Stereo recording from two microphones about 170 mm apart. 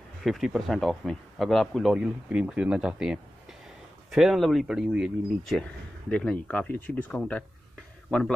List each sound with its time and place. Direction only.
0.2 s speech: centre (ahead or behind)